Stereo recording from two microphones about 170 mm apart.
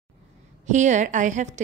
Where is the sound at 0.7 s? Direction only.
45° right (ahead or behind).